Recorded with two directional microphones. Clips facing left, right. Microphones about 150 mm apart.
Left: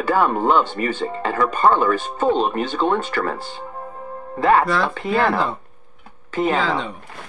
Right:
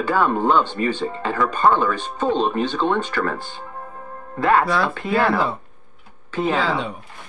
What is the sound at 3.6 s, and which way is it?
Music, 20° left (ahead or behind).